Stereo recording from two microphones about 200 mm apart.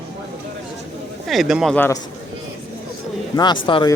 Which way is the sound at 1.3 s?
Centre (ahead or behind).